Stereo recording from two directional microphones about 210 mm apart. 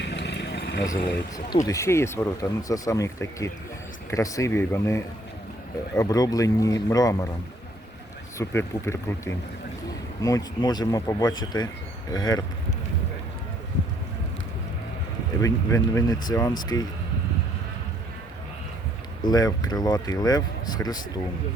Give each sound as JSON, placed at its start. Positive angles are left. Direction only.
{"t": 0.0, "sound": "vehicle", "side_deg": 55}
{"t": 1.6, "sound": "speech", "side_deg": 15}
{"t": 8.4, "sound": "speech", "side_deg": 10}
{"t": 15.4, "sound": "speech", "side_deg": 15}
{"t": 19.2, "sound": "speech", "side_deg": 20}